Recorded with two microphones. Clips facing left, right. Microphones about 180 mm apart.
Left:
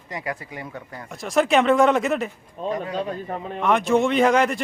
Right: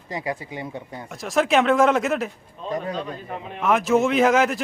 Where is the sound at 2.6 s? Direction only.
45° left (ahead or behind).